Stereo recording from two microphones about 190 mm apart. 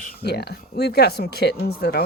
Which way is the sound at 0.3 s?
60° left (ahead or behind).